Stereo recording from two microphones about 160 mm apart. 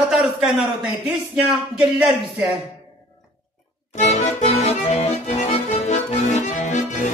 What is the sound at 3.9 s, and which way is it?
Accordion, 45° left (ahead or behind).